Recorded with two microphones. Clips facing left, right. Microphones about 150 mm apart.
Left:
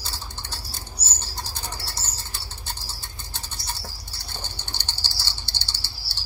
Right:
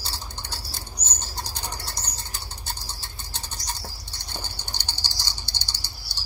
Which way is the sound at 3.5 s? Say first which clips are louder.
Even; 35° right (ahead or behind).